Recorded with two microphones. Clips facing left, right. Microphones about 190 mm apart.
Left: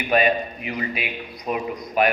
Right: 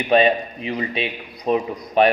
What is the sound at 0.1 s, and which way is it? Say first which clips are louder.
A man's voice: right 4 dB; 25° right (ahead or behind).